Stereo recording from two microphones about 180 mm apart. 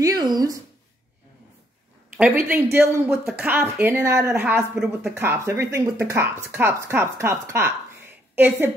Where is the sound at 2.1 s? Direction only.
10° right (ahead or behind).